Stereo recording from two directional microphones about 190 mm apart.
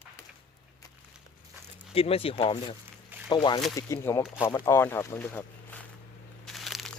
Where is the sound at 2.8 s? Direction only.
10° right (ahead or behind).